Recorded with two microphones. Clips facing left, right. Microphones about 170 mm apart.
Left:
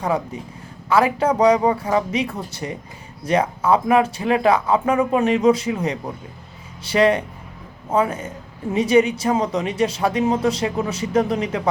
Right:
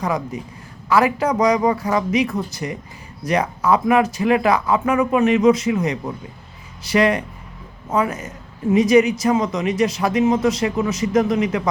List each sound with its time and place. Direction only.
0.0 s speech: 30° left (ahead or behind)